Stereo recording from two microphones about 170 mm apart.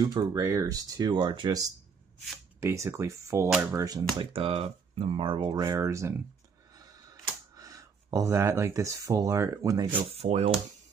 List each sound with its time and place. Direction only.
0.0 s speech: 20° right (ahead or behind)
3.4 s speech: 5° right (ahead or behind)
3.7 s speech: 25° right (ahead or behind)
6.7 s a sound: 20° right (ahead or behind)
10.1 s speech: 35° right (ahead or behind)